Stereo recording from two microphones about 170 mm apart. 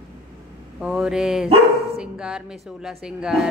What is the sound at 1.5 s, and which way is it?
Speech, 35° right (ahead or behind).